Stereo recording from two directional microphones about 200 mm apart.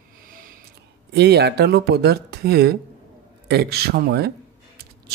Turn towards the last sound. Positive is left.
turn(degrees=-50)  # may be behind; listen again after turning